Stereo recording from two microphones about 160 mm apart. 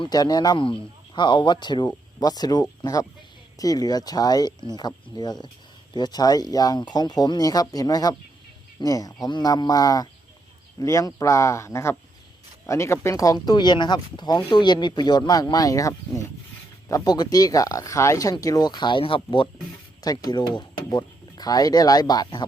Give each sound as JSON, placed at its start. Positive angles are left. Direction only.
{"t": 0.0, "sound": "speech", "side_deg": 25}